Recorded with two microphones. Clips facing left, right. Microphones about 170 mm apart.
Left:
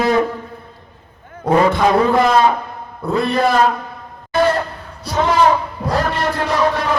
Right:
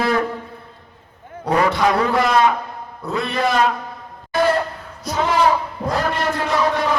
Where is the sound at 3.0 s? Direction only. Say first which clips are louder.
Left 5 dB; 55° left (ahead or behind).